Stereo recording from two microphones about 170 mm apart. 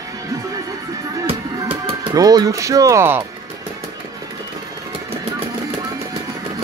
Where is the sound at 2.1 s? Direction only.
20° right (ahead or behind).